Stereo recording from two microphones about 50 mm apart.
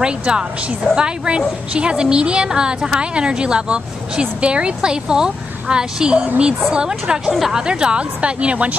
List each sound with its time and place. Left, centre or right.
0.0 s a woman's voice: centre
7.3 s a woman's voice: centre
7.6 s a woman's voice: centre